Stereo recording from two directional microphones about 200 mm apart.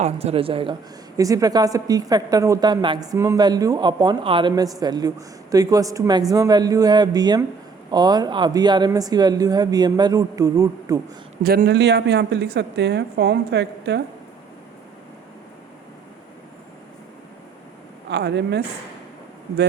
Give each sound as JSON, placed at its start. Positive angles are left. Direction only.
{"t": 0.0, "sound": "a man's voice", "side_deg": -30}
{"t": 11.4, "sound": "a woman's voice", "side_deg": -55}
{"t": 18.1, "sound": "a woman's voice", "side_deg": -60}